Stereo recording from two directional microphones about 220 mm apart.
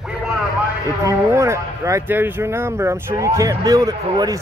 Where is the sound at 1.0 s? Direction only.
15° right (ahead or behind).